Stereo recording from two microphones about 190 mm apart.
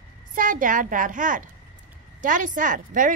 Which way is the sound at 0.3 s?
45° right (ahead or behind).